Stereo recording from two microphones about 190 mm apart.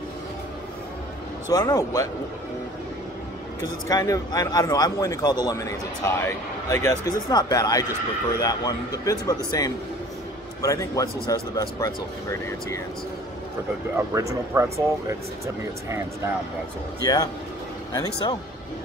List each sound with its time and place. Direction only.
1.5 s speech: 20° left (ahead or behind)
3.6 s a man's voice: 20° left (ahead or behind)
13.9 s speech: 15° right (ahead or behind)
17.0 s a man's voice: 20° left (ahead or behind)